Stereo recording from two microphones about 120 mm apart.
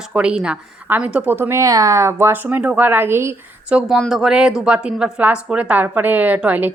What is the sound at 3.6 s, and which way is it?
A woman's voice, 10° right (ahead or behind).